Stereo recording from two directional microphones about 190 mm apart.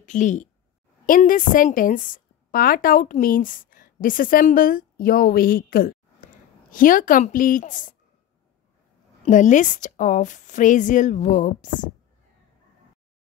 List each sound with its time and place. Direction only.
0.0 s a woman's voice: 40° left (ahead or behind)
9.2 s a woman's voice: 40° left (ahead or behind)